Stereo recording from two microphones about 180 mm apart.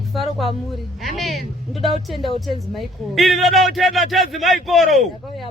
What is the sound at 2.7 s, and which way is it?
A man's voice, centre (ahead or behind).